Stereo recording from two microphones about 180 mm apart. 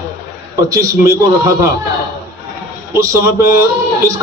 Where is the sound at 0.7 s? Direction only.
20° right (ahead or behind).